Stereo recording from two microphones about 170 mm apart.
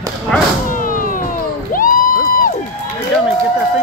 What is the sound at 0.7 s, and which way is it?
Cat, 50° left (ahead or behind).